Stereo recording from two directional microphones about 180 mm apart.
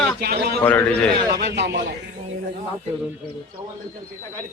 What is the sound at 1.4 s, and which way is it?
Speech, 70° right (ahead or behind).